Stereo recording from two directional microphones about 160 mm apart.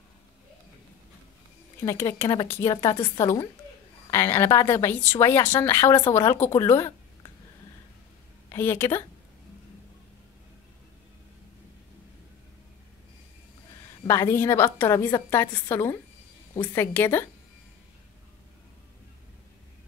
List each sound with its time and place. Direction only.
1.9 s a woman's voice: 20° left (ahead or behind)
8.5 s a woman's voice: 15° left (ahead or behind)
14.0 s a woman's voice: 15° left (ahead or behind)